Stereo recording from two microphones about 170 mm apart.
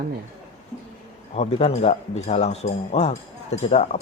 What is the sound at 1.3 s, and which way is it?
Speech, 40° left (ahead or behind).